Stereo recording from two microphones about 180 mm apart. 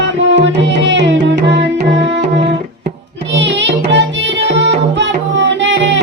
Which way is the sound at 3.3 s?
85° right.